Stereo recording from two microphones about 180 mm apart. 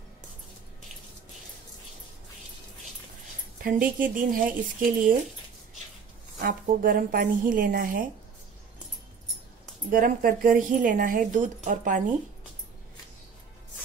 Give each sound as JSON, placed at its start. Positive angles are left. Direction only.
{"t": 3.7, "sound": "a woman's voice", "side_deg": -50}
{"t": 6.4, "sound": "a woman's voice", "side_deg": -50}
{"t": 9.8, "sound": "a woman's voice", "side_deg": -50}